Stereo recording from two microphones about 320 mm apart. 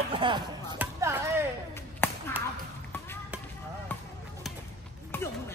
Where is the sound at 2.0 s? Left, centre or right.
Centre.